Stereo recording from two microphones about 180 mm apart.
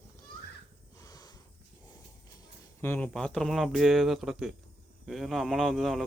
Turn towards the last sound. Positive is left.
turn(degrees=0)  # may be behind; listen again after turning